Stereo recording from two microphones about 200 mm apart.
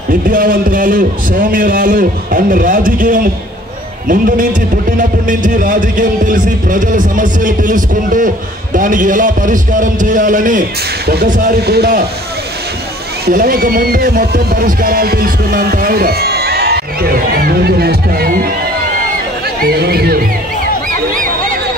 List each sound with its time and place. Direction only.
0.1 s speech: 45° right (ahead or behind)
13.2 s speech: 45° right (ahead or behind)
19.6 s speech: 50° right (ahead or behind)